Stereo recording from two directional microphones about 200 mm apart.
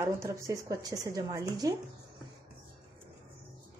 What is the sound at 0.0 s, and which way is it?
Speech, 15° right (ahead or behind).